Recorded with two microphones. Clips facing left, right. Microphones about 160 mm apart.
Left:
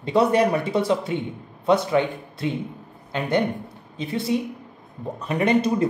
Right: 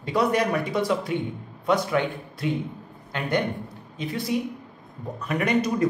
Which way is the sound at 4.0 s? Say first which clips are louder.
Left 3 dB; 25° left (ahead or behind).